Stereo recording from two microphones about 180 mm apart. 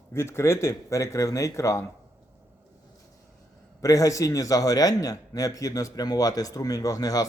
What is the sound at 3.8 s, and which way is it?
A man's voice, 20° left (ahead or behind).